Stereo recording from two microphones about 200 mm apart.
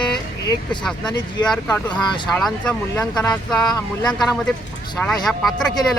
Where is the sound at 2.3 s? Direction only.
5° left (ahead or behind).